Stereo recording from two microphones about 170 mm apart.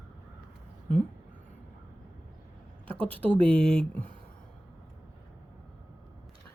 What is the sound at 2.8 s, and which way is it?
Speech, 10° left (ahead or behind).